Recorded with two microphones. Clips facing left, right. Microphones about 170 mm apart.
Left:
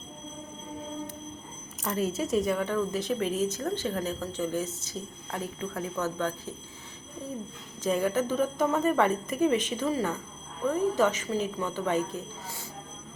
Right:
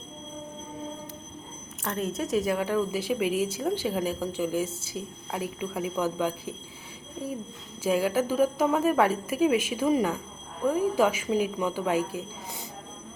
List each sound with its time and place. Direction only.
1.8 s speech: centre (ahead or behind)
7.9 s speech: 5° right (ahead or behind)